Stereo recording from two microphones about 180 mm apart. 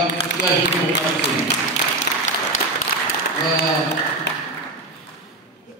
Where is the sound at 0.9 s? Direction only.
65° left (ahead or behind).